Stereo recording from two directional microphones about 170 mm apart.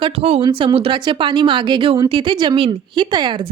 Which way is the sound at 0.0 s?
35° right (ahead or behind).